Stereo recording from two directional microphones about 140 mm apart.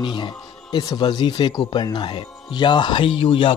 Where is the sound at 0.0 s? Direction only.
35° left (ahead or behind).